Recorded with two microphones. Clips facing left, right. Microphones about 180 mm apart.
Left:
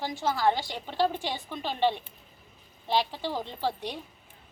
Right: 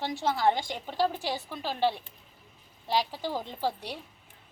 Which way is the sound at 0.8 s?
10° right (ahead or behind).